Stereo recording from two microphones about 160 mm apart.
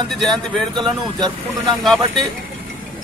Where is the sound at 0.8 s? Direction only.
25° right (ahead or behind).